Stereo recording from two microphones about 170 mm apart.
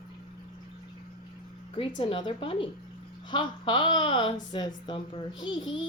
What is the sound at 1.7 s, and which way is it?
A woman's voice, 30° left (ahead or behind).